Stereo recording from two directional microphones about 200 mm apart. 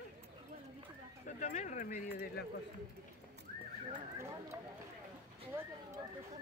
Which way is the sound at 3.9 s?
15° right (ahead or behind).